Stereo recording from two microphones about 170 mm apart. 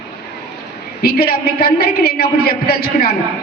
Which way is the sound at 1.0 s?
65° left (ahead or behind).